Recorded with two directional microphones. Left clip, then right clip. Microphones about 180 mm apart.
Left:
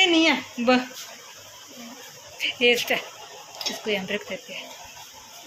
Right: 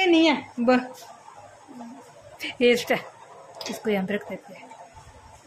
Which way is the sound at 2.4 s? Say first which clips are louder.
Left 1 dB; 35° right (ahead or behind).